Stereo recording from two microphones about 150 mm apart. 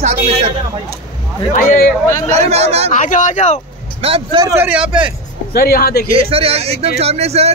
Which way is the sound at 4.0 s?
40° right (ahead or behind).